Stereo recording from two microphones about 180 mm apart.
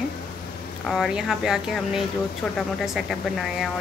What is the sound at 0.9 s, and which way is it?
A woman's voice, 5° right (ahead or behind).